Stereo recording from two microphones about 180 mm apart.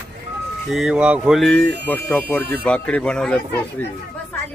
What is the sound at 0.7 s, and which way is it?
Speech, 5° right (ahead or behind).